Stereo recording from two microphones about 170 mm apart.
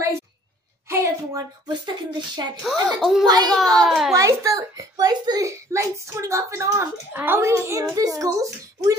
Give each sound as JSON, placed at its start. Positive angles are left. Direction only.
{"t": 0.8, "sound": "a sound", "side_deg": -15}
{"t": 2.6, "sound": "speech", "side_deg": 0}
{"t": 3.3, "sound": "a child's voice", "side_deg": -25}
{"t": 3.5, "sound": "speech", "side_deg": 0}
{"t": 4.1, "sound": "a child's voice", "side_deg": -20}